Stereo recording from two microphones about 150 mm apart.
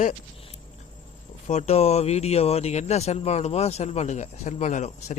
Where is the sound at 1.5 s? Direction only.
45° left (ahead or behind).